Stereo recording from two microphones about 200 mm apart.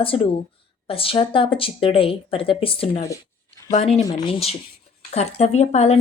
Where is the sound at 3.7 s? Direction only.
30° left (ahead or behind).